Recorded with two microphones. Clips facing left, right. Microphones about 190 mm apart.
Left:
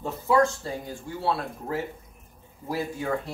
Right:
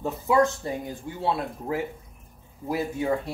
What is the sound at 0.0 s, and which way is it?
Speech, 20° right (ahead or behind).